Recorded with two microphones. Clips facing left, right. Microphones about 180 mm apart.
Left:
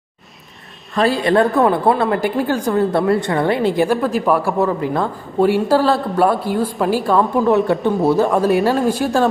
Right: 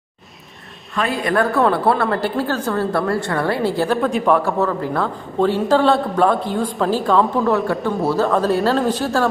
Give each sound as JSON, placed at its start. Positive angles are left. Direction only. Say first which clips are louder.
{"t": 1.2, "sound": "a woman's voice", "louder": "left 1 dB", "side_deg": 20}
{"t": 4.0, "sound": "a woman's voice", "louder": "even", "side_deg": 0}